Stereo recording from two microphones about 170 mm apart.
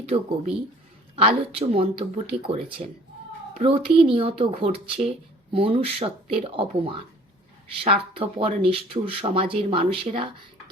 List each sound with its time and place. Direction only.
0.0 s speech: 35° right (ahead or behind)
1.5 s speech: 35° right (ahead or behind)